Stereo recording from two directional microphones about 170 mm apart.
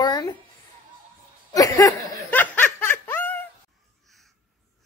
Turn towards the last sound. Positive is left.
turn(degrees=10)  # may be behind; listen again after turning